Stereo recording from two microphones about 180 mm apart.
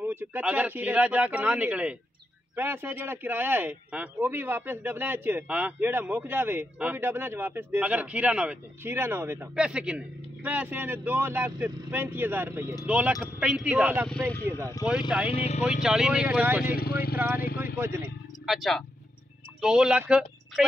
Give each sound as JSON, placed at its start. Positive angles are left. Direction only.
{"t": 0.0, "sound": "a man's voice", "side_deg": -10}
{"t": 15.0, "sound": "speech", "side_deg": -5}
{"t": 15.3, "sound": "speech", "side_deg": 40}
{"t": 15.8, "sound": "a man's voice", "side_deg": -5}
{"t": 16.7, "sound": "speech", "side_deg": 55}
{"t": 17.7, "sound": "a man's voice", "side_deg": -15}
{"t": 18.4, "sound": "speech", "side_deg": 0}